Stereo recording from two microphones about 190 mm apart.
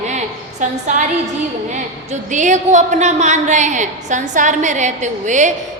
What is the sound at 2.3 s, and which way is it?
A woman's voice, 40° right (ahead or behind).